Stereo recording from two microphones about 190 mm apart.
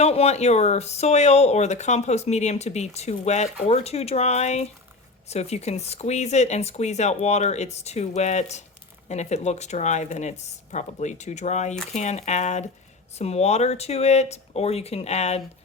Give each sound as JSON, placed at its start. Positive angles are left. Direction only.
{"t": 0.0, "sound": "speech", "side_deg": 35}